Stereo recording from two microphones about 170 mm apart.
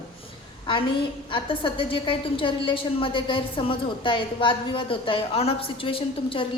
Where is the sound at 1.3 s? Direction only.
30° left (ahead or behind).